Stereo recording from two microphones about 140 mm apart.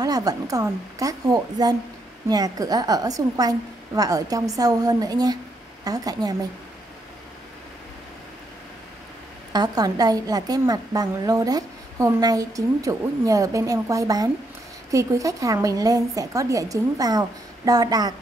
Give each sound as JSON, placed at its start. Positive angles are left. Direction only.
{"t": 0.0, "sound": "speech", "side_deg": -25}
{"t": 9.5, "sound": "speech", "side_deg": -30}